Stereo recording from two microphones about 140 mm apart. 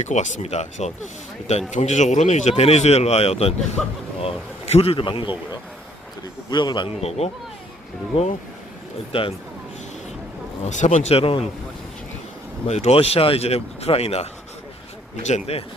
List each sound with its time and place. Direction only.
0.0 s speech: 60° left (ahead or behind)
3.8 s speech: centre (ahead or behind)
4.2 s speech: 45° left (ahead or behind)
6.5 s a man's voice: 30° left (ahead or behind)
7.0 s speech: 45° left (ahead or behind)
10.6 s speech: 55° left (ahead or behind); by 11.4 s 40° left (ahead or behind)
12.6 s speech: 50° left (ahead or behind)